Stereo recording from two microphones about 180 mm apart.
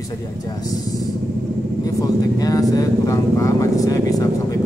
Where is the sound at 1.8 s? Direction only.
20° left (ahead or behind).